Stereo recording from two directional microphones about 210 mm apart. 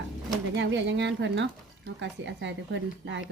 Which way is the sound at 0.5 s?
55° right (ahead or behind).